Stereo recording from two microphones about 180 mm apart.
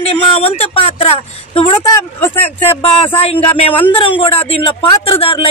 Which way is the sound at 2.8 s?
30° left (ahead or behind).